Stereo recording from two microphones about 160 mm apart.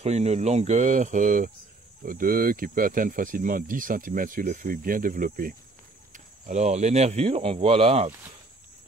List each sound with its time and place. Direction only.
0.0 s speech: 40° right (ahead or behind)